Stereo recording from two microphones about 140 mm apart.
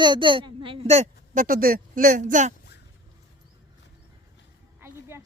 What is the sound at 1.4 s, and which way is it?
Speech, 90° right.